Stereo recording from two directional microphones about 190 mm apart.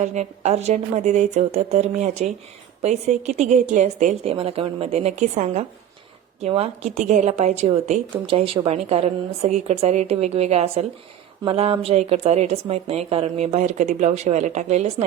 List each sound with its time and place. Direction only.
0.0 s a woman's voice: 40° right (ahead or behind)